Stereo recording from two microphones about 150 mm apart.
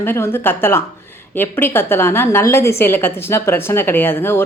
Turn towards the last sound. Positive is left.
turn(degrees=15)  # may be behind; listen again after turning